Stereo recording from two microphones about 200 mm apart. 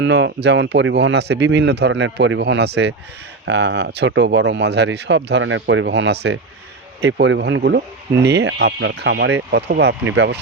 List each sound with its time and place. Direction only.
0.0 s speech: 60° right (ahead or behind)